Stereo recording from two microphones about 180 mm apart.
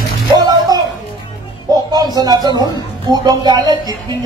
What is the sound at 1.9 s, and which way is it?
Speech, 20° right (ahead or behind).